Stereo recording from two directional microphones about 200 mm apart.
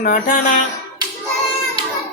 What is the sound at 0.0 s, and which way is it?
Music, 45° left (ahead or behind).